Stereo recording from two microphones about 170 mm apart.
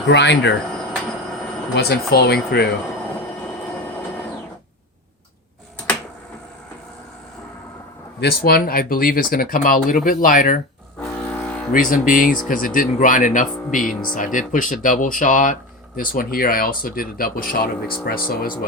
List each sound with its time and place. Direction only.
0.1 s speech: 90° left
1.7 s speech: 70° left (ahead or behind)
8.2 s speech: 65° left (ahead or behind)
11.0 s music: 5° left (ahead or behind)
11.7 s speech: 55° left (ahead or behind)